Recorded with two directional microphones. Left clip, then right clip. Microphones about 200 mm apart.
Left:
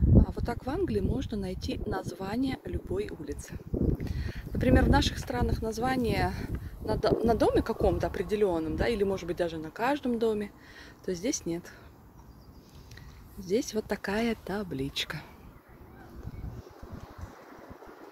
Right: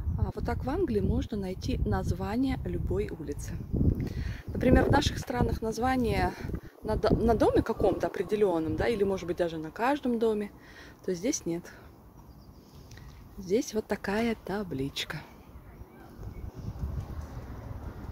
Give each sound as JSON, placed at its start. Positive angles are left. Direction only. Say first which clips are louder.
{"t": 0.2, "sound": "speech", "louder": "even", "side_deg": 0}
{"t": 13.4, "sound": "speech", "louder": "right 1 dB", "side_deg": 0}